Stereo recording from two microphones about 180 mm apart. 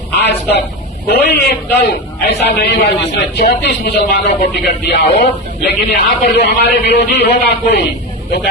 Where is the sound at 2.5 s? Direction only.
65° left (ahead or behind).